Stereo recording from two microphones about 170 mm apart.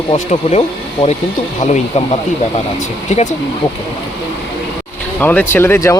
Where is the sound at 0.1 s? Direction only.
40° left (ahead or behind).